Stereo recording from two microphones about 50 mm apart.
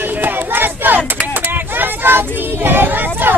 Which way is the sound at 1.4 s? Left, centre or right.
Right.